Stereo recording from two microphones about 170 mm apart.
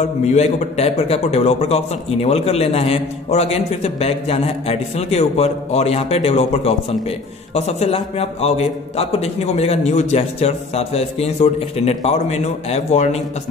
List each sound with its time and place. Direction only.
0.2 s a man's voice: 40° left (ahead or behind)